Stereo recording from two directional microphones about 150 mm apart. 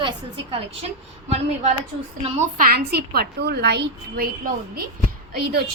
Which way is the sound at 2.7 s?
90° right.